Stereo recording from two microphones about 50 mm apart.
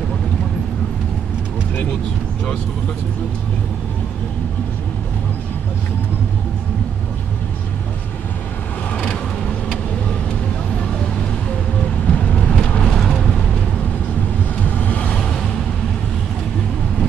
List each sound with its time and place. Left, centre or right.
8.9 s vehicle: left
12.1 s vehicle: left
14.6 s vehicle: left